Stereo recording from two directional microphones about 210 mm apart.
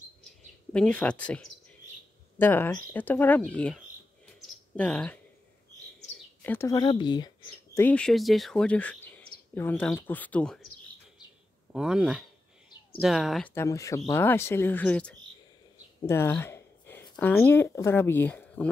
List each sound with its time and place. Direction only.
0.7 s speech: 5° left (ahead or behind)
6.4 s speech: 10° left (ahead or behind)
7.7 s speech: 5° left (ahead or behind)
11.7 s speech: 5° right (ahead or behind)
13.6 s speech: 15° left (ahead or behind)
16.1 s a sound: 10° left (ahead or behind)
17.2 s speech: 10° left (ahead or behind)